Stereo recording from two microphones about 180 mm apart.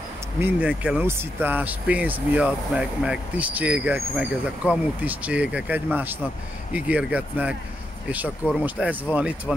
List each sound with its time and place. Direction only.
0.4 s speech: 5° right (ahead or behind)
8.6 s speech: 10° right (ahead or behind)